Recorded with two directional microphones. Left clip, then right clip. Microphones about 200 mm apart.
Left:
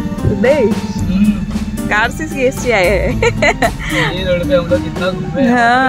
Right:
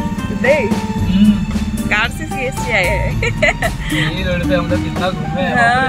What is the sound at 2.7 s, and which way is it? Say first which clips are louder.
Speech: left 2 dB; 50° left (ahead or behind).